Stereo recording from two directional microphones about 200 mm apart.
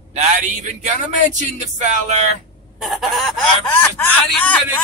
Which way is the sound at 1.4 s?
40° right (ahead or behind).